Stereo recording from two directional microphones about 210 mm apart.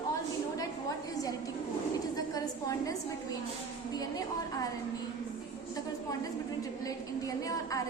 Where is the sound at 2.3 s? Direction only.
15° left (ahead or behind).